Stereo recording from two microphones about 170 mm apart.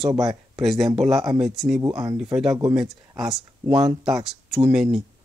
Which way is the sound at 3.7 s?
20° right (ahead or behind).